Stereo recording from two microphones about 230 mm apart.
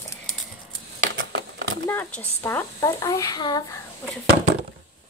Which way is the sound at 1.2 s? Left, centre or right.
Right.